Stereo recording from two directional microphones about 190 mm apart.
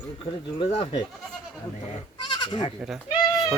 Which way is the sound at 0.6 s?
25° left (ahead or behind).